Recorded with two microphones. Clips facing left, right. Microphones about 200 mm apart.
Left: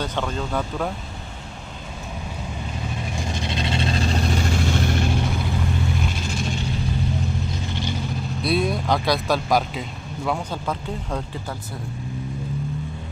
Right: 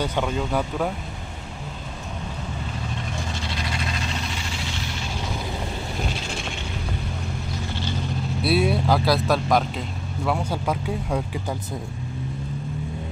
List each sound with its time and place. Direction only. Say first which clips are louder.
0.0 s speech: right 2 dB; 10° right (ahead or behind)
3.3 s vehicle: left 5 dB; 20° left (ahead or behind); by 5.1 s 55° left (ahead or behind)
6.1 s vehicle: left 4 dB; 40° left (ahead or behind)
8.4 s speech: right 1 dB; 5° right (ahead or behind)
10.3 s speech: right 3 dB; 10° right (ahead or behind)